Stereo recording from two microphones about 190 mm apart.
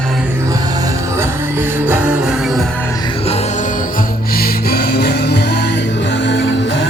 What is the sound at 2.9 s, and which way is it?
Music, 25° left (ahead or behind).